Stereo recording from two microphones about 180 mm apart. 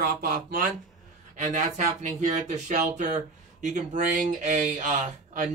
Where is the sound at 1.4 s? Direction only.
40° right (ahead or behind).